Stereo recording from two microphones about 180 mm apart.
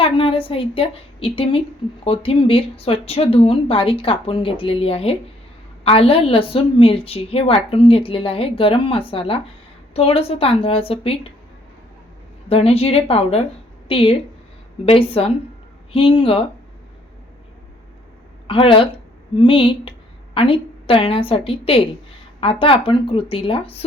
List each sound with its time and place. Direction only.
0.0 s a woman's voice: 30° left (ahead or behind)
12.5 s a woman's voice: 35° left (ahead or behind)
18.4 s a woman's voice: 30° left (ahead or behind)